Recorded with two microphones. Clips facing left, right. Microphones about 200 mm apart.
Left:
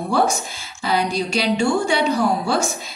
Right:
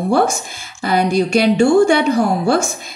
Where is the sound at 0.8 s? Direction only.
50° right (ahead or behind).